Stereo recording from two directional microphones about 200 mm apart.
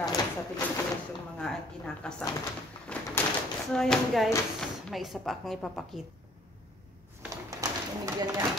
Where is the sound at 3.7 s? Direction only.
5° left (ahead or behind).